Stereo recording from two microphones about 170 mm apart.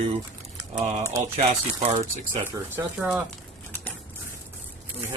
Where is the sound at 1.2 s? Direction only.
40° right (ahead or behind).